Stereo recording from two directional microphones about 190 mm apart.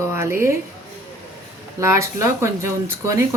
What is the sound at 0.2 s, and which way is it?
Speech, 15° right (ahead or behind).